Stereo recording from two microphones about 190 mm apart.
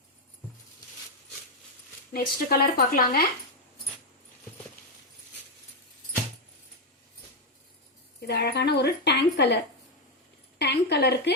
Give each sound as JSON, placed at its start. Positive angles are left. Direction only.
{"t": 2.1, "sound": "speech", "side_deg": 55}
{"t": 8.2, "sound": "a woman's voice", "side_deg": 65}
{"t": 10.6, "sound": "a woman's voice", "side_deg": 60}